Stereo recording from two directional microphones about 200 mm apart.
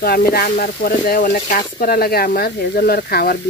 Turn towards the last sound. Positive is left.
turn(degrees=50)  # may be behind; listen again after turning